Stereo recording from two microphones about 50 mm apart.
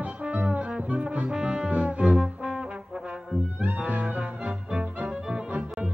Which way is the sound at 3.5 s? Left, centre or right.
Right.